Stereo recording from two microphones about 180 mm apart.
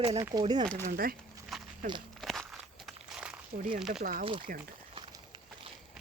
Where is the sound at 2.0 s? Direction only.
Centre (ahead or behind).